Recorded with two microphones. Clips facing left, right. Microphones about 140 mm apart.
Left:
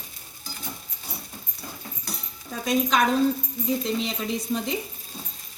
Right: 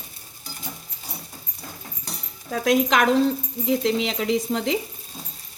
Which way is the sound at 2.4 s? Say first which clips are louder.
Right 4 dB; 80° right.